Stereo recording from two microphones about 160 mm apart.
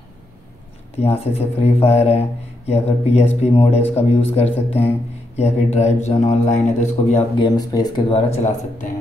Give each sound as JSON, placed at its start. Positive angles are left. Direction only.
{"t": 0.9, "sound": "a man's voice", "side_deg": 40}
{"t": 7.3, "sound": "speech", "side_deg": 25}
{"t": 8.3, "sound": "a man's voice", "side_deg": 45}